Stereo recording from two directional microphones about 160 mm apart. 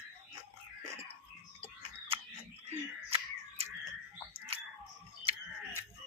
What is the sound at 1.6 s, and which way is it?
Frog, 35° right (ahead or behind).